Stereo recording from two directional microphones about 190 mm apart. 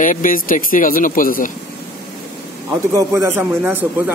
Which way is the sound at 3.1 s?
10° right (ahead or behind).